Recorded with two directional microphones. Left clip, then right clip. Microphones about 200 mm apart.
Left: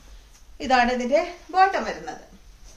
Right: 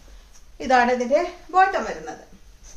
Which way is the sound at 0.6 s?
30° right (ahead or behind).